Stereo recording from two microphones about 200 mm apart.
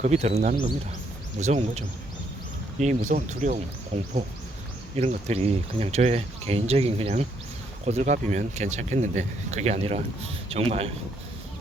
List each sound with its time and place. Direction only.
0.0 s speech: 35° right (ahead or behind)
2.8 s speech: 35° right (ahead or behind)